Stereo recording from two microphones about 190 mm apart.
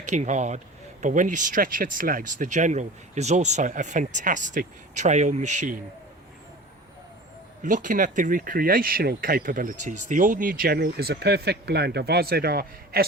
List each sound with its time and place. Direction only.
0.0 s speech: 40° right (ahead or behind)
7.6 s speech: 40° right (ahead or behind)